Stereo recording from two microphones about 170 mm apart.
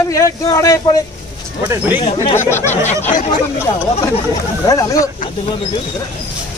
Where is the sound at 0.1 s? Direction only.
20° left (ahead or behind).